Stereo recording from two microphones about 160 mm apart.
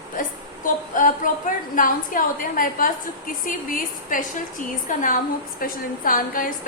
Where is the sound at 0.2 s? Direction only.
55° left (ahead or behind).